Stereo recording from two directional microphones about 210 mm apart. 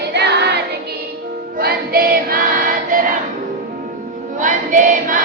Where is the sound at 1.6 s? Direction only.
45° right (ahead or behind).